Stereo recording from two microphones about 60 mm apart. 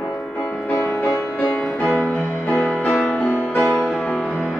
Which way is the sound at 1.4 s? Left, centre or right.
Left.